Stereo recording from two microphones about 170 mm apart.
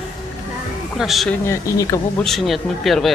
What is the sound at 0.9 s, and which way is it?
Speech, centre (ahead or behind).